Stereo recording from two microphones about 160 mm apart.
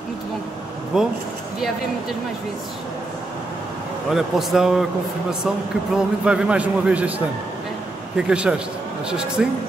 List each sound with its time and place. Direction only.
0.9 s speech: 5° right (ahead or behind)
4.1 s speech: centre (ahead or behind)
5.9 s a man's voice: 5° right (ahead or behind)
8.2 s speech: 5° right (ahead or behind)